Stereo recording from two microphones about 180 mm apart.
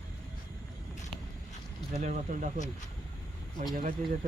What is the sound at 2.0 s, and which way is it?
Speech, 45° right (ahead or behind).